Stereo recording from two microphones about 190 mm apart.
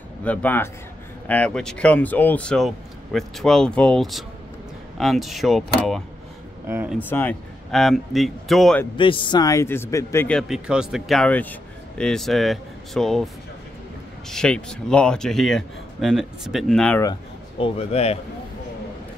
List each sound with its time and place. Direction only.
0.2 s speech: 10° left (ahead or behind); by 7.0 s 10° right (ahead or behind)
7.0 s speech: 10° left (ahead or behind)
8.9 s speech: 25° left (ahead or behind); by 13.3 s centre (ahead or behind)
14.3 s speech: 5° left (ahead or behind)
17.0 s speech: 25° left (ahead or behind)